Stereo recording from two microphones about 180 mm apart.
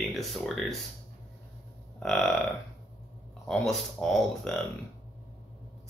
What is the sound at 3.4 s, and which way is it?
Speech, 5° left (ahead or behind).